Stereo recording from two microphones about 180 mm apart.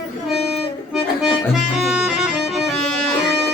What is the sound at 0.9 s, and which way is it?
Accordion, centre (ahead or behind).